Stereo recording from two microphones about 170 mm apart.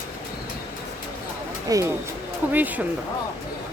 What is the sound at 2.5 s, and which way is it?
Speech, 10° right (ahead or behind).